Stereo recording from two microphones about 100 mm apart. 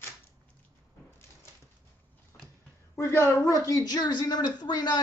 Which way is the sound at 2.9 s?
30° left (ahead or behind).